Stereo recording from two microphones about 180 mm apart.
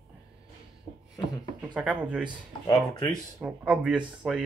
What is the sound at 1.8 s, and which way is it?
Speech, 5° right (ahead or behind).